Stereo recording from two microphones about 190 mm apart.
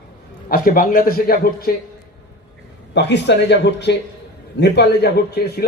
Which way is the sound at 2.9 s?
65° left (ahead or behind).